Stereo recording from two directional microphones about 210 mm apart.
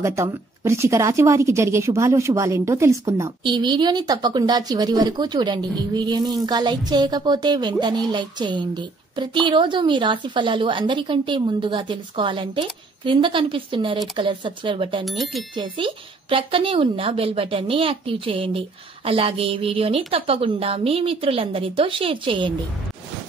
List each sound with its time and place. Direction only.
0.0 s a woman's voice: 15° right (ahead or behind)
15.0 s speech: centre (ahead or behind)
15.5 s a woman's voice: 25° right (ahead or behind)